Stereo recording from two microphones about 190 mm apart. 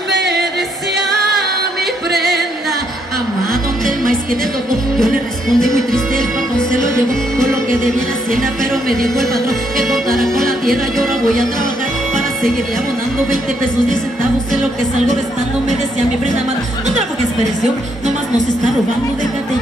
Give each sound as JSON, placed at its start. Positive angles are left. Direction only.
{"t": 0.1, "sound": "music", "side_deg": -65}
{"t": 4.9, "sound": "music", "side_deg": 0}
{"t": 7.3, "sound": "music", "side_deg": 0}